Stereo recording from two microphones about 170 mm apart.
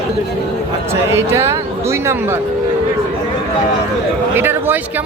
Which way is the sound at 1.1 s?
15° right (ahead or behind).